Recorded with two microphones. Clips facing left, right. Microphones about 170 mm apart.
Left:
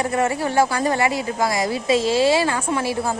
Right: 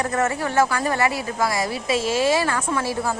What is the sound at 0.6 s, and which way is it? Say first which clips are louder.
Speech: left 2 dB; 25° left (ahead or behind).